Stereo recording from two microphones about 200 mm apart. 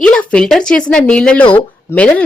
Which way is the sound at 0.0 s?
5° left (ahead or behind).